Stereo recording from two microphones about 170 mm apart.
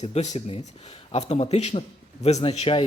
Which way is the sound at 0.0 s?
40° left (ahead or behind).